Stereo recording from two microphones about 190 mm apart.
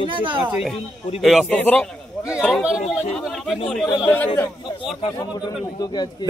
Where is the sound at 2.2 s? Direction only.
5° right (ahead or behind).